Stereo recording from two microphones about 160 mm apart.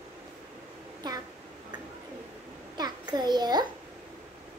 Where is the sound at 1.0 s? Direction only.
25° right (ahead or behind).